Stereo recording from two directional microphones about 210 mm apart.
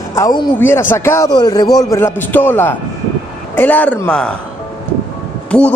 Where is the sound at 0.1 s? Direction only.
15° left (ahead or behind).